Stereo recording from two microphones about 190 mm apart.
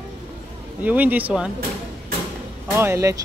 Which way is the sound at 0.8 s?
10° right (ahead or behind).